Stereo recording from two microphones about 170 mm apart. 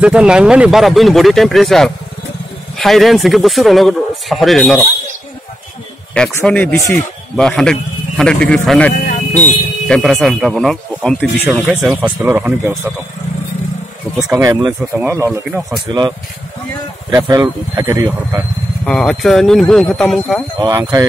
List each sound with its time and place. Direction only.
0.0 s speech: 5° right (ahead or behind)
6.3 s speech: 10° left (ahead or behind)
8.9 s a sound: 45° left (ahead or behind)
9.4 s speech: 5° left (ahead or behind); by 12.9 s 15° right (ahead or behind)
14.3 s speech: 20° right (ahead or behind)
17.3 s speech: 25° right (ahead or behind)
18.9 s speech: 5° left (ahead or behind)
20.8 s speech: 20° right (ahead or behind)